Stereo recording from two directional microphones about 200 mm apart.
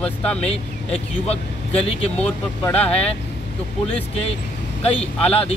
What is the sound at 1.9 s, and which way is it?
Speech, 30° left (ahead or behind).